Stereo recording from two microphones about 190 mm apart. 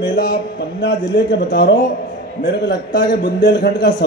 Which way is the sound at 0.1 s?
60° left (ahead or behind).